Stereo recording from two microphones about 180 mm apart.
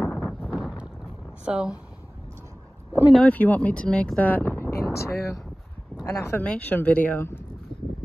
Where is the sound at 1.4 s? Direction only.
5° right (ahead or behind).